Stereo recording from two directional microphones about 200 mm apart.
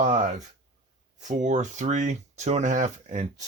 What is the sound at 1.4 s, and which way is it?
Speech, 35° right (ahead or behind).